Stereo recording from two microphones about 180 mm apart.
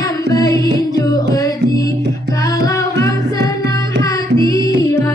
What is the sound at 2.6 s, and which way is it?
Music, 20° left (ahead or behind).